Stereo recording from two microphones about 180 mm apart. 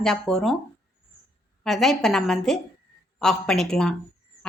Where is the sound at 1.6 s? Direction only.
Centre (ahead or behind).